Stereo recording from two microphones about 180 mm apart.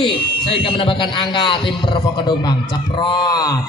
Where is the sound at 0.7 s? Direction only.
30° left (ahead or behind).